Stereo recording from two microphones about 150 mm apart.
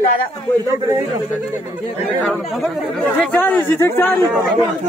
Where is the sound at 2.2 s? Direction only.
5° left (ahead or behind).